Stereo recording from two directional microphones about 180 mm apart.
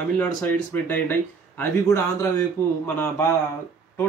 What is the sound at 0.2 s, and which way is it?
Speech, 10° left (ahead or behind).